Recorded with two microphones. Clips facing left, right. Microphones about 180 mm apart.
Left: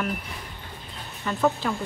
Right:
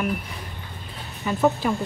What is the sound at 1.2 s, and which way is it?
Speech, 15° right (ahead or behind).